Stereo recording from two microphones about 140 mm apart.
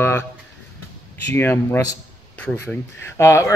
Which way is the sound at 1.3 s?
15° left (ahead or behind).